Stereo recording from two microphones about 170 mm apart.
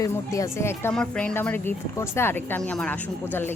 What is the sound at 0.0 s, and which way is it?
Speech, 20° left (ahead or behind).